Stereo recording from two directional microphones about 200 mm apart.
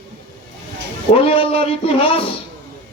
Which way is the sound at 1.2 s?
25° left (ahead or behind).